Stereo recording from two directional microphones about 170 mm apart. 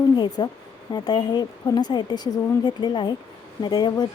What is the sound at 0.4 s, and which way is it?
Speech, 25° left (ahead or behind).